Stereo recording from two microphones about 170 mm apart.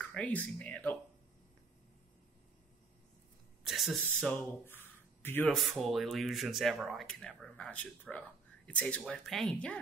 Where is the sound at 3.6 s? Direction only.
Centre (ahead or behind).